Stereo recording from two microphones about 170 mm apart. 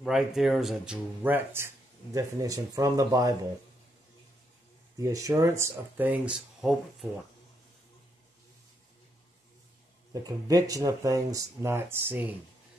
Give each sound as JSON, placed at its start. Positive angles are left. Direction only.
{"t": 0.0, "sound": "speech", "side_deg": -5}
{"t": 4.9, "sound": "speech", "side_deg": -20}
{"t": 10.2, "sound": "speech", "side_deg": -20}